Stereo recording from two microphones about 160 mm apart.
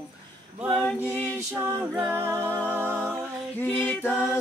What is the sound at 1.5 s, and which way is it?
Music, 15° right (ahead or behind).